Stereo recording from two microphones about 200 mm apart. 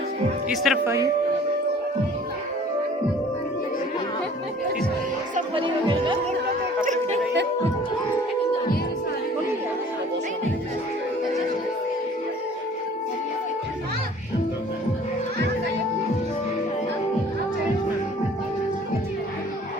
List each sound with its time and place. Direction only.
0.5 s speech: centre (ahead or behind)
0.9 s speech: 15° right (ahead or behind)
5.5 s music: 25° right (ahead or behind)
6.8 s a sound: 35° right (ahead or behind)